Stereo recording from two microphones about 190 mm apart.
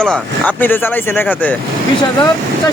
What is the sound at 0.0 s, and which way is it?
Speech, 5° left (ahead or behind).